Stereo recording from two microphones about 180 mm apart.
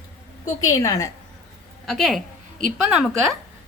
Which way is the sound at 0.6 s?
20° left (ahead or behind).